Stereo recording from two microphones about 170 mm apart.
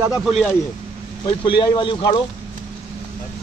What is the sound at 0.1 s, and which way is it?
Speech, centre (ahead or behind).